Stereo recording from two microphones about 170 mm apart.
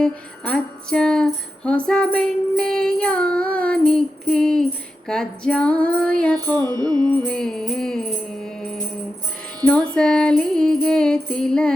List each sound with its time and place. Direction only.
0.0 s jingle bell: 5° left (ahead or behind)
5.0 s music: 5° left (ahead or behind)
6.3 s music: 25° right (ahead or behind)
7.3 s music: 5° left (ahead or behind)
9.9 s jingle bell: 5° left (ahead or behind)